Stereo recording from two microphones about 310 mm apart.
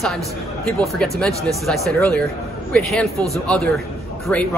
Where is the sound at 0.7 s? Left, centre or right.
Centre.